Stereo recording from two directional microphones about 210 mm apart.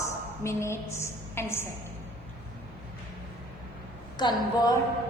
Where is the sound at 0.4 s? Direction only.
15° left (ahead or behind).